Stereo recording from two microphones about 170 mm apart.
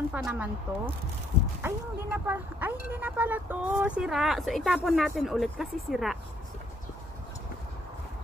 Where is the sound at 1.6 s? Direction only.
10° right (ahead or behind).